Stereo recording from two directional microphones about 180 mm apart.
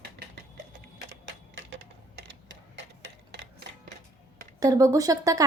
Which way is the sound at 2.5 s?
80° right.